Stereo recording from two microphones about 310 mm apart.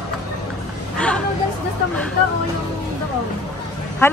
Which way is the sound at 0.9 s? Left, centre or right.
Centre.